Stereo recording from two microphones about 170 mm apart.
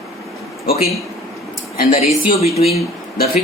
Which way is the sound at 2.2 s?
40° left (ahead or behind).